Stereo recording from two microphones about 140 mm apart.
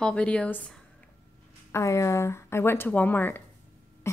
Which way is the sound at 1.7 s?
20° left (ahead or behind).